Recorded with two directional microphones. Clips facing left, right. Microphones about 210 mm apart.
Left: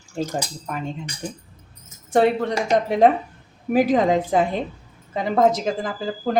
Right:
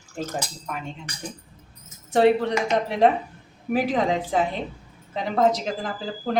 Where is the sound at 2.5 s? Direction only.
35° left (ahead or behind).